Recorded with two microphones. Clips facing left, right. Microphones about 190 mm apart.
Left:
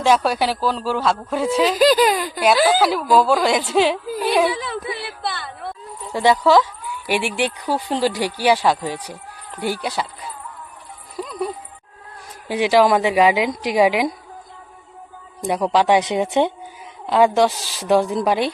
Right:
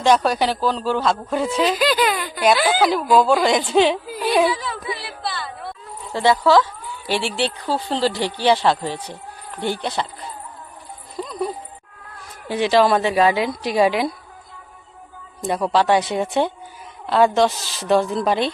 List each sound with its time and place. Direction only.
0.0 s speech: 5° left (ahead or behind)
1.7 s speech: 40° left (ahead or behind)
2.6 s speech: 5° left (ahead or behind)
4.5 s a sound: 55° left (ahead or behind)
6.1 s speech: 15° left (ahead or behind)
11.2 s music: 10° left (ahead or behind)
12.5 s speech: 10° left (ahead or behind)
15.4 s speech: 15° left (ahead or behind)